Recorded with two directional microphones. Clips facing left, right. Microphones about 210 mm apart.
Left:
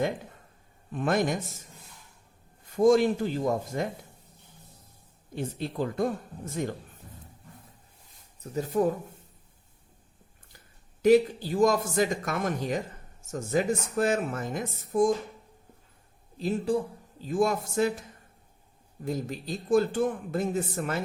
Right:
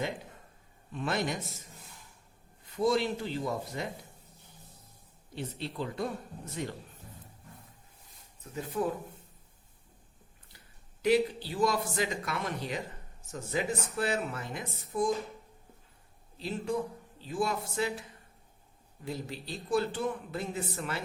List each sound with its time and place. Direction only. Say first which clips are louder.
0.9 s speech: left 6 dB; 50° left (ahead or behind)
2.7 s speech: left 8 dB; 45° left (ahead or behind)
5.3 s speech: left 5 dB; 45° left (ahead or behind)
8.5 s speech: left 6 dB; 45° left (ahead or behind)
11.0 s speech: left 6 dB; 45° left (ahead or behind)
16.7 s a man's voice: left 5 dB; 30° left (ahead or behind)
17.2 s speech: left 6 dB; 45° left (ahead or behind)